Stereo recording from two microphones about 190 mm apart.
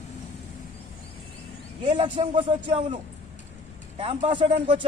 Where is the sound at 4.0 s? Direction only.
30° right (ahead or behind).